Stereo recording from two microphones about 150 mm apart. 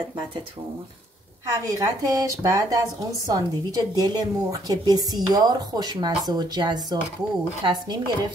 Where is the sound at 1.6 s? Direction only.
25° right (ahead or behind).